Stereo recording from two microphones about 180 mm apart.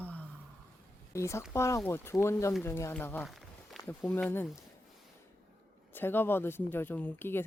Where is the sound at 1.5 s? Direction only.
15° left (ahead or behind).